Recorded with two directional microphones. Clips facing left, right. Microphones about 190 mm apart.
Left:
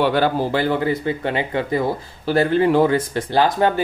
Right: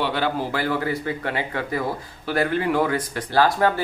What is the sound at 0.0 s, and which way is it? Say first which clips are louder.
Speech: left 6 dB; 45° left (ahead or behind).